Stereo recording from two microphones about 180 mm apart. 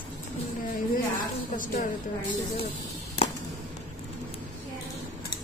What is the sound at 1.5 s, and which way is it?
Speech, 45° left (ahead or behind).